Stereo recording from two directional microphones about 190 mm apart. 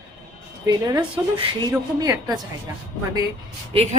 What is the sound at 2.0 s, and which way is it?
Speech, 20° right (ahead or behind).